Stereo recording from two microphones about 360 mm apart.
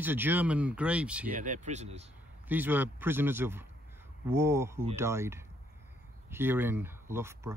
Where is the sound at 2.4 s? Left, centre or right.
Centre.